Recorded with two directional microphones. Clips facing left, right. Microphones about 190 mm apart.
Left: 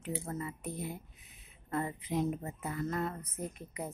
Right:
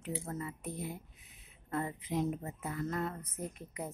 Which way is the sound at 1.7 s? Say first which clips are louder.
Left 1 dB; 15° left (ahead or behind).